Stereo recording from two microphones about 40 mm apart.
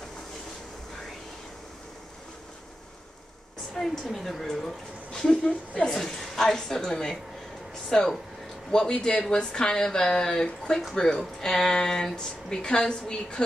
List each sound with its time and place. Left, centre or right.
3.7 s a woman's voice: centre